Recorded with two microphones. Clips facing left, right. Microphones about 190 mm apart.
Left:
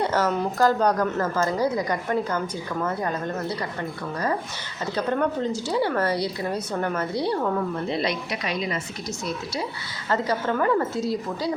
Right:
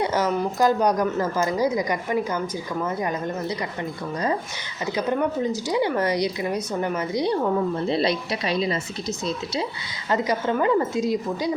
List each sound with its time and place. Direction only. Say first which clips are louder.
0.0 s speech: right 1 dB; 15° right (ahead or behind)
4.9 s speech: right 1 dB; 10° right (ahead or behind)
7.9 s a woman's voice: right 3 dB; 30° right (ahead or behind)
10.1 s speech: right 1 dB; 15° right (ahead or behind)